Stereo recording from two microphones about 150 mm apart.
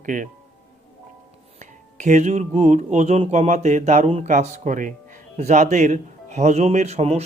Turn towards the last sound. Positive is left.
turn(degrees=-45)  # may be behind; listen again after turning